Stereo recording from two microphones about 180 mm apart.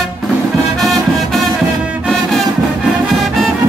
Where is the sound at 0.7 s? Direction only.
Centre (ahead or behind).